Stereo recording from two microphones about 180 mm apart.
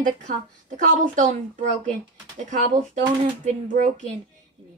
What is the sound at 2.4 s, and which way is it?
A woman's voice, 45° right (ahead or behind).